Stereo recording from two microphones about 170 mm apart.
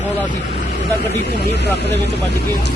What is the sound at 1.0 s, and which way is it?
Speech, 75° right (ahead or behind).